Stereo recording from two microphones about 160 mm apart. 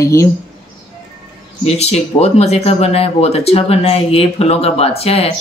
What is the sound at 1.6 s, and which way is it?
Speech, 40° left (ahead or behind).